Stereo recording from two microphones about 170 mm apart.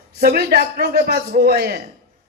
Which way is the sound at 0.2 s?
65° right (ahead or behind).